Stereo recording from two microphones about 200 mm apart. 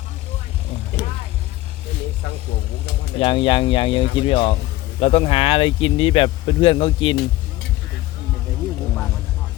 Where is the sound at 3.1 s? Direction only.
25° left (ahead or behind).